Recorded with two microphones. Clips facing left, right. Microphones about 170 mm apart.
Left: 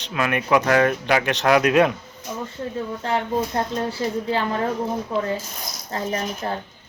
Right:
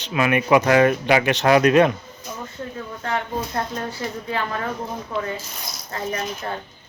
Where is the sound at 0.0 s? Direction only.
5° right (ahead or behind).